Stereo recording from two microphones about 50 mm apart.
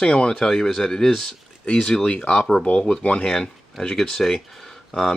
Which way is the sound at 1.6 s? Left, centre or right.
Centre.